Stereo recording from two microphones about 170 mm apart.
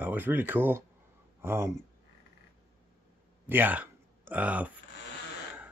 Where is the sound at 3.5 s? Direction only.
10° right (ahead or behind).